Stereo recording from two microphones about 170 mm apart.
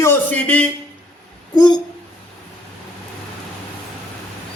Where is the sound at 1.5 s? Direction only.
25° left (ahead or behind).